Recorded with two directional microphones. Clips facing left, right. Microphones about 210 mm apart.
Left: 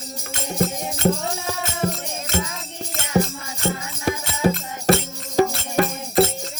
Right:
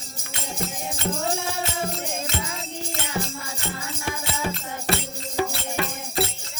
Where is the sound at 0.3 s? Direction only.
50° left (ahead or behind).